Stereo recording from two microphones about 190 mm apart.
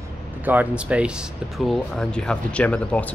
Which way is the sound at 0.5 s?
10° right (ahead or behind).